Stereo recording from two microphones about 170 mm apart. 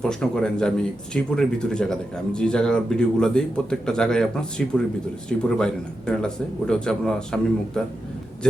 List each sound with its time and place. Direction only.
0.0 s speech: 5° left (ahead or behind)